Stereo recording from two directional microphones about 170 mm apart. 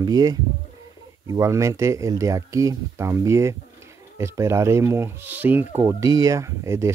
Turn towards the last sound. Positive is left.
turn(degrees=-15)  # may be behind; listen again after turning